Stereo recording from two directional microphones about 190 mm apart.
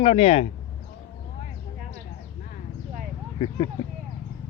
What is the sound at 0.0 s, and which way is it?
Speech, 30° left (ahead or behind).